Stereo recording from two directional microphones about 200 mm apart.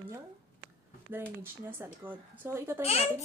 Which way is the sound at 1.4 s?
10° right (ahead or behind).